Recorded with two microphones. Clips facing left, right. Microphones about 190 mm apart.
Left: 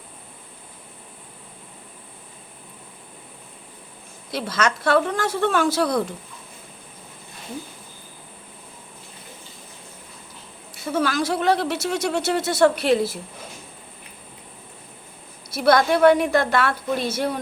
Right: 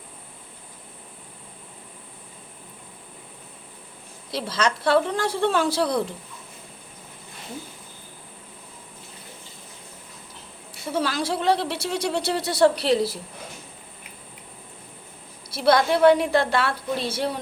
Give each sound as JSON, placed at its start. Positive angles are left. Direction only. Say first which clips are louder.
{"t": 4.3, "sound": "a woman's voice", "louder": "left 1 dB", "side_deg": -30}
{"t": 10.9, "sound": "a woman's voice", "louder": "left 3 dB", "side_deg": -30}
{"t": 15.4, "sound": "a woman's voice", "louder": "left 2 dB", "side_deg": -30}